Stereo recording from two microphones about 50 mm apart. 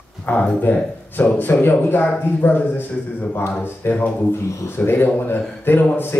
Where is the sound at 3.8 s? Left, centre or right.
Left.